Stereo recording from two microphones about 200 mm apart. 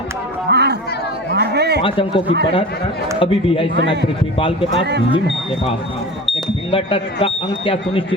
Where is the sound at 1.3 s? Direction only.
55° right (ahead or behind).